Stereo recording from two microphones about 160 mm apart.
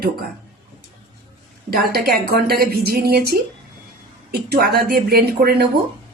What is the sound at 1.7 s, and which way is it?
A woman's voice, 75° right (ahead or behind).